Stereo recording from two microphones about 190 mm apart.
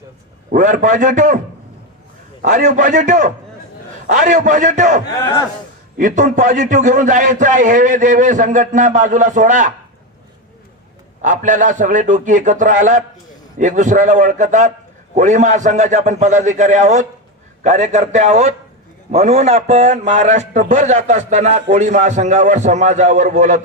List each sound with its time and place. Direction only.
0.5 s a man's voice: 40° right (ahead or behind)
2.4 s a man's voice: 40° right (ahead or behind)
5.2 s speech: 15° left (ahead or behind)
6.0 s a man's voice: 40° right (ahead or behind)
11.2 s a man's voice: 40° right (ahead or behind)